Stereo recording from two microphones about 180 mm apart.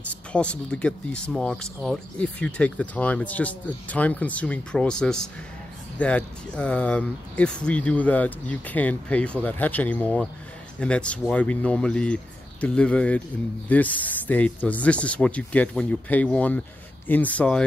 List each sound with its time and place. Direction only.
0.1 s speech: 5° left (ahead or behind)